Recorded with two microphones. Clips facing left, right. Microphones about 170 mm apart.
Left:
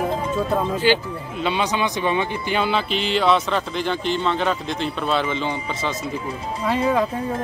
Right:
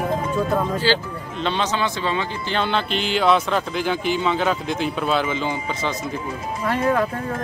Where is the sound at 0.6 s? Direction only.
15° left (ahead or behind).